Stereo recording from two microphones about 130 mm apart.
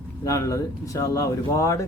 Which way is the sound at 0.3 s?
25° left (ahead or behind).